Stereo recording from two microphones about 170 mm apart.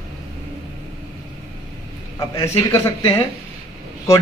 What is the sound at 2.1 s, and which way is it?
Speech, 15° left (ahead or behind).